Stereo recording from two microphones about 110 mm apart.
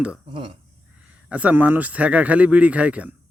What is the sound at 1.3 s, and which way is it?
A man's voice, 10° right (ahead or behind).